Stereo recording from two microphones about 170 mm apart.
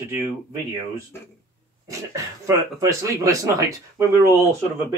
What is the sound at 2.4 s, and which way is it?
Speech, 20° right (ahead or behind).